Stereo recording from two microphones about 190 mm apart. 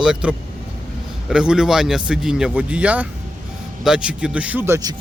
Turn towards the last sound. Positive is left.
turn(degrees=-15)  # may be behind; listen again after turning